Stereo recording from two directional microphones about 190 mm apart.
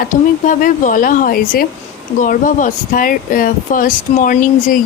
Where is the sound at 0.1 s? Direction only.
45° left (ahead or behind).